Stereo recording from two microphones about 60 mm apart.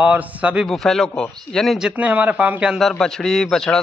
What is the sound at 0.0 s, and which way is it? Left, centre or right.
Speech, right.